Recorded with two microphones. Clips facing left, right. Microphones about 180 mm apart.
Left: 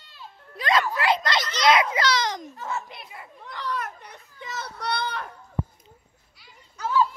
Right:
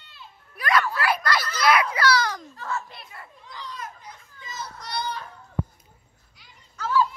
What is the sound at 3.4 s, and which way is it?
Children playing, 65° left (ahead or behind).